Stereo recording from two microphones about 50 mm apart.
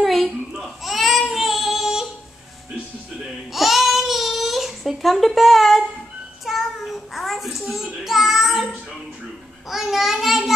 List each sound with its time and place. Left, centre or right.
0.0 s baby cry: centre
3.5 s a sound: centre
6.4 s child singing: centre
9.7 s a child's voice: centre